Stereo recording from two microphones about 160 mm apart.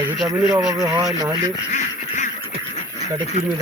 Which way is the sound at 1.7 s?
50° left (ahead or behind).